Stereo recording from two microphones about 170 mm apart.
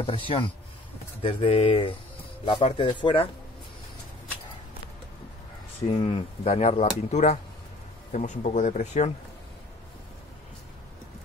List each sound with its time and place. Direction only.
0.0 s speech: 30° left (ahead or behind)
5.9 s speech: 35° left (ahead or behind)